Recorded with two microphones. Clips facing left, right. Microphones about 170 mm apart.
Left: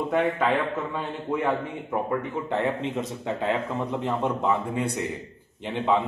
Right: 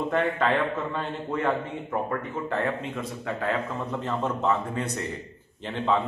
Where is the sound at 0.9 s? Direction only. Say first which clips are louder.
Left 1 dB; 10° left (ahead or behind).